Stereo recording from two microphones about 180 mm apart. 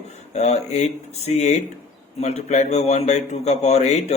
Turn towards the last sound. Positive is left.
turn(degrees=40)  # may be behind; listen again after turning